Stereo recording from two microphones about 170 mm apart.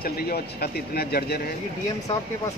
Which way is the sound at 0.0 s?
65° left (ahead or behind).